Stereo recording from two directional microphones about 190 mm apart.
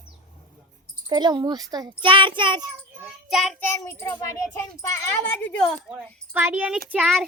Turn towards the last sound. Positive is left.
turn(degrees=-5)  # may be behind; listen again after turning